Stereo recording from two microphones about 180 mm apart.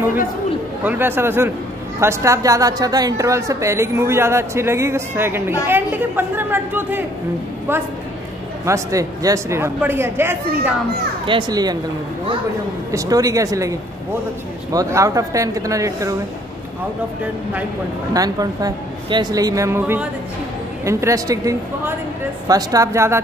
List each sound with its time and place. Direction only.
0.8 s a woman's voice: 10° right (ahead or behind)
8.6 s a woman's voice: 15° right (ahead or behind)
11.2 s a woman's voice: 25° right (ahead or behind)
12.9 s a woman's voice: 20° right (ahead or behind)
18.1 s a woman's voice: 20° right (ahead or behind)